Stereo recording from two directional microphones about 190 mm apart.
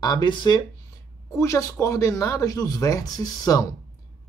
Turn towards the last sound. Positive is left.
turn(degrees=20)  # may be behind; listen again after turning